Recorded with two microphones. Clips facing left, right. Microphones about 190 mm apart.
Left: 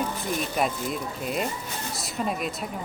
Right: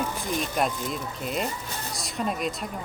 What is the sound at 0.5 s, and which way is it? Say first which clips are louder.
Speech: even; centre (ahead or behind).